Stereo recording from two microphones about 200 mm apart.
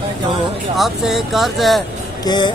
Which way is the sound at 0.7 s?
Centre (ahead or behind).